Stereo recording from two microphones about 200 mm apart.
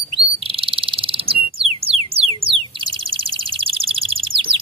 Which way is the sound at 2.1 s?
30° right (ahead or behind).